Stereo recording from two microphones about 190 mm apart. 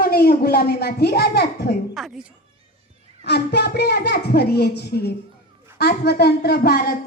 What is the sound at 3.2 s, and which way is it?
A woman's voice, 60° left (ahead or behind).